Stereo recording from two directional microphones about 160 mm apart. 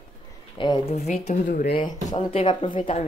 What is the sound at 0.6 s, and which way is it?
Speech, 30° left (ahead or behind).